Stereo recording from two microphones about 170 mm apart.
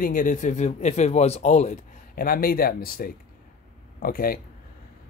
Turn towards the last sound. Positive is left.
turn(degrees=60)  # may be behind; listen again after turning